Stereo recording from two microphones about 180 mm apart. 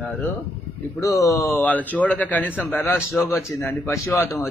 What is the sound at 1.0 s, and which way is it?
A man's voice, 20° left (ahead or behind).